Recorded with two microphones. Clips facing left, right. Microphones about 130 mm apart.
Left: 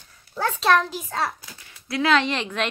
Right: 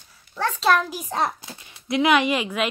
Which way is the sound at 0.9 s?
15° right (ahead or behind).